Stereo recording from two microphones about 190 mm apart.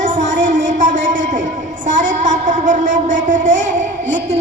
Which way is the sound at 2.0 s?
40° right (ahead or behind).